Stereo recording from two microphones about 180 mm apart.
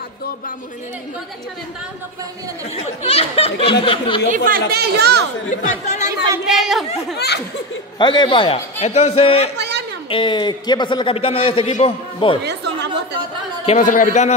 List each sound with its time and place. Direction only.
2.7 s a man's voice: 35° left (ahead or behind)
4.3 s speech: 50° right (ahead or behind)
5.5 s a man's voice: 40° left (ahead or behind)
6.4 s a woman's voice: centre (ahead or behind)
7.2 s laughter: 65° left (ahead or behind)
8.0 s a man's voice: 25° left (ahead or behind)
9.6 s a sound: 70° right (ahead or behind)
10.0 s a man's voice: 25° left (ahead or behind)
12.4 s chatter: 70° right (ahead or behind)
13.7 s a man's voice: 45° left (ahead or behind)